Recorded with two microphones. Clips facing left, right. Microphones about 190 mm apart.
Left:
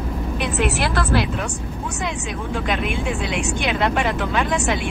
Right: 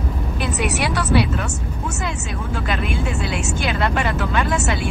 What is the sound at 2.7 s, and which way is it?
Speech, 5° right (ahead or behind).